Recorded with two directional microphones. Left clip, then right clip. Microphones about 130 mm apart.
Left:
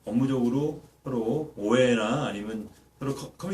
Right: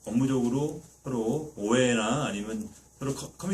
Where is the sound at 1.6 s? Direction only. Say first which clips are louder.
Left 2 dB; 20° right (ahead or behind).